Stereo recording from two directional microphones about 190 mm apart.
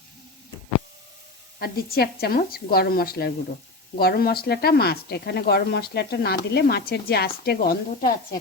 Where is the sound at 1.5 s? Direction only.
55° left (ahead or behind).